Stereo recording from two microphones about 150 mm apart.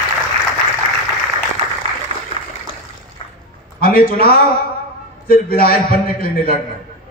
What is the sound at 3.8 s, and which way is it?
A man's voice, 80° left.